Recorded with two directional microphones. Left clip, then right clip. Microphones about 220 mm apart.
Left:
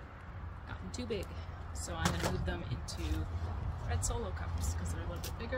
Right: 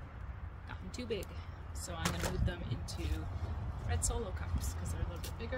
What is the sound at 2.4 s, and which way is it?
Speech, centre (ahead or behind).